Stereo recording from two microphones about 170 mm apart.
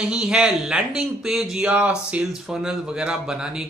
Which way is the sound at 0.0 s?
5° right (ahead or behind).